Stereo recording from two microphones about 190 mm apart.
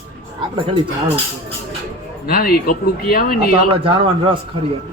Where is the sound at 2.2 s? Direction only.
50° left (ahead or behind).